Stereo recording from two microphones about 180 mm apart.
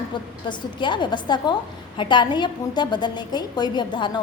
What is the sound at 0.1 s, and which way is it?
A woman's voice, 25° left (ahead or behind).